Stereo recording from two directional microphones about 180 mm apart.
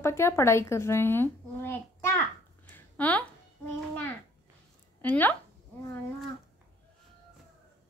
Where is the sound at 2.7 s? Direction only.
10° left (ahead or behind).